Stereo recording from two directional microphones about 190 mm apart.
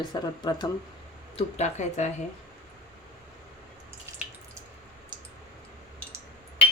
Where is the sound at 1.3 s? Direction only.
35° left (ahead or behind).